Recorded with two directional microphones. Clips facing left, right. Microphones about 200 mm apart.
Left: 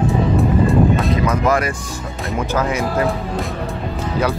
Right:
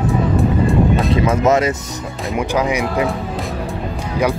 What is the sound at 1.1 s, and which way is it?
Speech, 25° right (ahead or behind).